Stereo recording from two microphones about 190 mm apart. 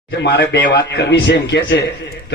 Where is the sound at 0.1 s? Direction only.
65° left (ahead or behind).